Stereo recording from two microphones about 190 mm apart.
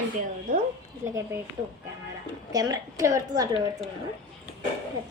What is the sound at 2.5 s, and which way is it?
A woman's voice, 20° right (ahead or behind).